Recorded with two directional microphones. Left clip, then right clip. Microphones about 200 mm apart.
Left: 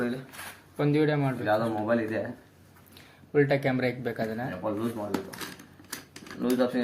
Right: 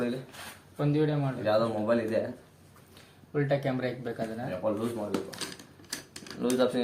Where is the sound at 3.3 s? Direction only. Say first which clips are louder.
Left 5 dB; 35° left (ahead or behind).